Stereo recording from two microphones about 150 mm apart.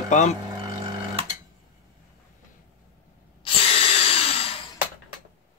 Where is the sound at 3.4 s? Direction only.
40° left (ahead or behind).